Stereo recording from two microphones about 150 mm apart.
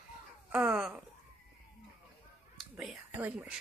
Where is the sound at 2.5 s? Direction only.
5° right (ahead or behind).